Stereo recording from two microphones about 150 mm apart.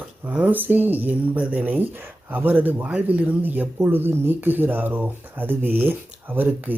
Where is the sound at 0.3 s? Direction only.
10° right (ahead or behind).